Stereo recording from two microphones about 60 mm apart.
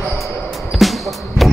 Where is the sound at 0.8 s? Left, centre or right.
Centre.